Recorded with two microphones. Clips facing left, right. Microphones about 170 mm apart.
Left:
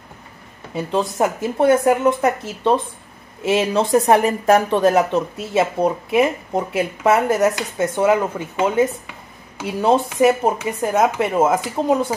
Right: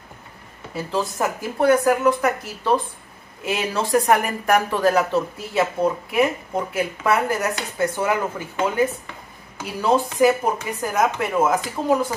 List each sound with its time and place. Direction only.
0.7 s speech: 20° left (ahead or behind)